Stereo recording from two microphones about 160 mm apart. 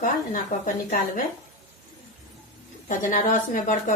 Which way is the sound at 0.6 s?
55° left (ahead or behind).